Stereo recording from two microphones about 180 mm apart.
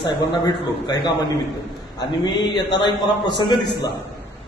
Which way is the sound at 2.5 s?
25° left (ahead or behind).